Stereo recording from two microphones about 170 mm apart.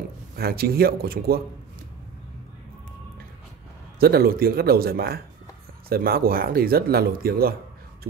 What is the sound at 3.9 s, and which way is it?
A man's voice, 65° right (ahead or behind).